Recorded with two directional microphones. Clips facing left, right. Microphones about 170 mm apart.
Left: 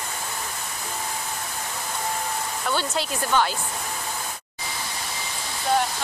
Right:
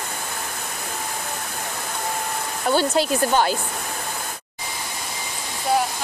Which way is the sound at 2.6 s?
40° right (ahead or behind).